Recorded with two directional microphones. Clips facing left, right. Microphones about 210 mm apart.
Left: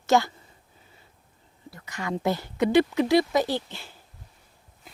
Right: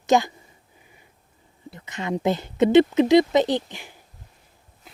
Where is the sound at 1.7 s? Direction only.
20° right (ahead or behind).